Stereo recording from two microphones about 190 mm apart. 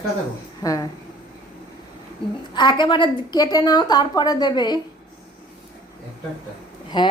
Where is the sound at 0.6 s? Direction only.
20° left (ahead or behind).